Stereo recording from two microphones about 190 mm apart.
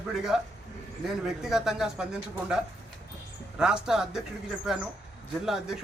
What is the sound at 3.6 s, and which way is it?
Speech, 5° right (ahead or behind).